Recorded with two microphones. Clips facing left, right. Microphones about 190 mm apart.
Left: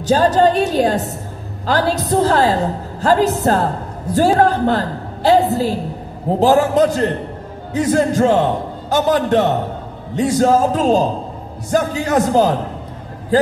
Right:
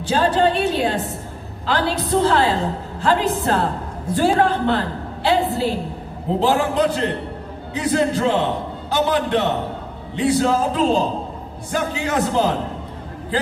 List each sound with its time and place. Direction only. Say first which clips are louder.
0.0 s a woman's voice: left 4 dB; 40° left (ahead or behind)